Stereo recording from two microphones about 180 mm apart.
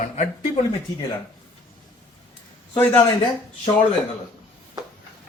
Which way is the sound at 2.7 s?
10° left (ahead or behind).